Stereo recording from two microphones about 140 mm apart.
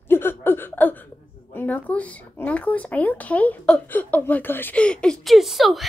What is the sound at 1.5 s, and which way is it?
Speech, 10° left (ahead or behind).